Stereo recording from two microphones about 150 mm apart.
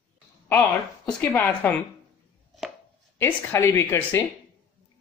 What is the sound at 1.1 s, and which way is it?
Speech, 10° left (ahead or behind).